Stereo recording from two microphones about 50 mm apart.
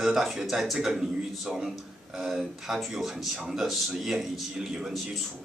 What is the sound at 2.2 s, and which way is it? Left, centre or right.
A man's voice, centre.